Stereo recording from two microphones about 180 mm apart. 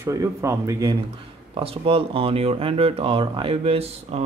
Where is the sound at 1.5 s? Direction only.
30° right (ahead or behind).